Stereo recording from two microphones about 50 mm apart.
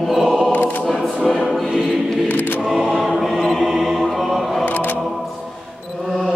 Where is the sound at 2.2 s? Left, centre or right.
Left.